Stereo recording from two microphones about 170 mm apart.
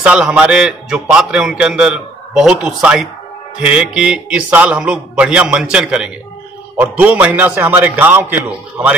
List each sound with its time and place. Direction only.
0.0 s a man's voice: 5° right (ahead or behind)